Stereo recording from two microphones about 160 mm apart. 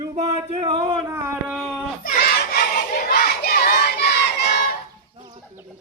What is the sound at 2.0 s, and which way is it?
Crowd, 65° left (ahead or behind).